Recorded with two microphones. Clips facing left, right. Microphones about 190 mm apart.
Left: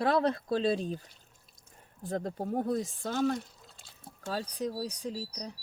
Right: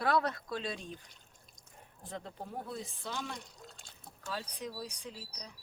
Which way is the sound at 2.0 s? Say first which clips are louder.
Left 10 dB; 40° left (ahead or behind).